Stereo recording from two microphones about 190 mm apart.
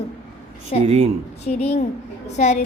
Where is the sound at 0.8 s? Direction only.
35° right (ahead or behind).